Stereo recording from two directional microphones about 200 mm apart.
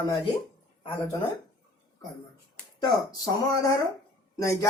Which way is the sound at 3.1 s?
15° left (ahead or behind).